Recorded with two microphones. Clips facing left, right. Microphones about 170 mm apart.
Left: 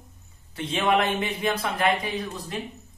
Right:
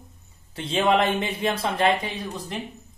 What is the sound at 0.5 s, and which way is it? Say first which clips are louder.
A man's voice: right 2 dB; 30° right (ahead or behind).